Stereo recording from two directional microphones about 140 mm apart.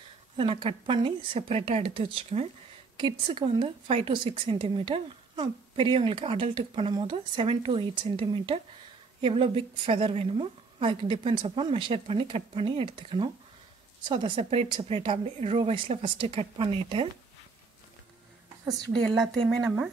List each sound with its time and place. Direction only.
0.4 s a woman's voice: 40° right (ahead or behind)
19.0 s speech: centre (ahead or behind)